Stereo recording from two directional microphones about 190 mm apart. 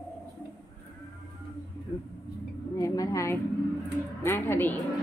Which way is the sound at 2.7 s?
20° left (ahead or behind).